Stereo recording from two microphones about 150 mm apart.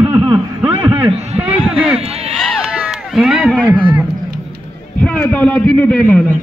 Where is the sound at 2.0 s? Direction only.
40° right (ahead or behind).